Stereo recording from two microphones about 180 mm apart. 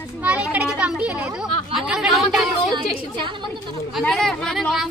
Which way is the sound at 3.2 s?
25° right (ahead or behind).